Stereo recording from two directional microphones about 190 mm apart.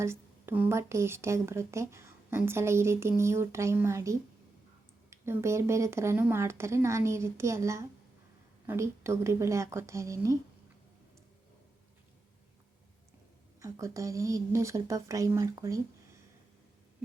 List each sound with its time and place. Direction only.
0.0 s a woman's voice: 10° right (ahead or behind)
13.6 s a woman's voice: 15° right (ahead or behind)